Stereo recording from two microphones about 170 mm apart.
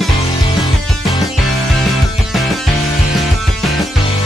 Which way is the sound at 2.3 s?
Centre (ahead or behind).